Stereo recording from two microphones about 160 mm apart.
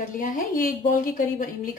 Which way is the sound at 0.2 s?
65° left (ahead or behind).